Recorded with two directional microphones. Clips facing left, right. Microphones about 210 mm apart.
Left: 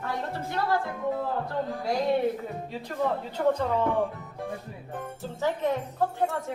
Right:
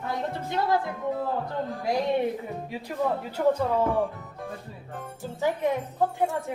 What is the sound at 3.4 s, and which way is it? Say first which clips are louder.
Speech: right 2 dB; 5° right (ahead or behind).